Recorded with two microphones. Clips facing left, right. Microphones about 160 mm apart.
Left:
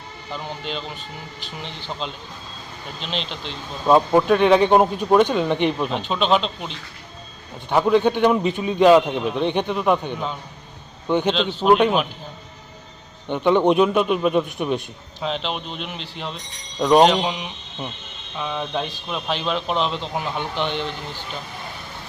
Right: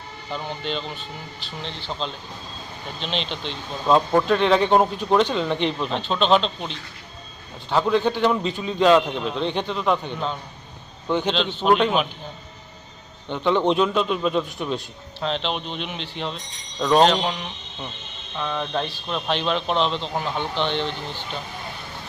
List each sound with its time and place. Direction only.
0.6 s speech: 5° left (ahead or behind)
7.7 s speech: 15° left (ahead or behind)
11.4 s speech: centre (ahead or behind)
13.2 s speech: 15° left (ahead or behind)